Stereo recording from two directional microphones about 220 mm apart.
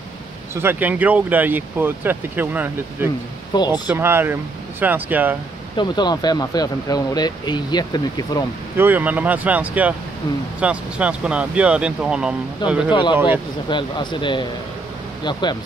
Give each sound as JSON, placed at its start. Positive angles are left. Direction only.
{"t": 0.6, "sound": "speech", "side_deg": -10}
{"t": 3.5, "sound": "speech", "side_deg": 20}
{"t": 3.9, "sound": "speech", "side_deg": -10}
{"t": 5.8, "sound": "speech", "side_deg": 20}
{"t": 8.7, "sound": "speech", "side_deg": -10}
{"t": 12.9, "sound": "speech", "side_deg": 20}